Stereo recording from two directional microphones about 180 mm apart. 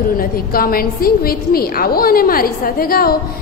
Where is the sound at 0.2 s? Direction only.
55° left (ahead or behind).